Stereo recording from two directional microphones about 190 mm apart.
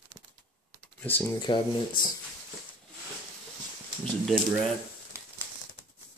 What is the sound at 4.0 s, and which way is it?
Speech, centre (ahead or behind).